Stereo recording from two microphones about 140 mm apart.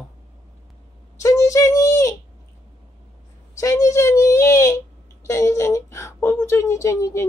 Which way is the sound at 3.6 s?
20° left (ahead or behind).